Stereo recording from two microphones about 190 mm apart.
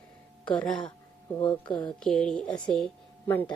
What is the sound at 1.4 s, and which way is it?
Speech, 25° left (ahead or behind).